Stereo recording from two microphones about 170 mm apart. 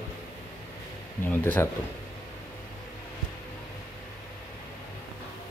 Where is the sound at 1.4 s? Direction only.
15° left (ahead or behind).